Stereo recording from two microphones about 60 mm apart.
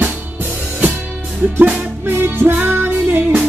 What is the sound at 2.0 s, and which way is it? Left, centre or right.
Music, right.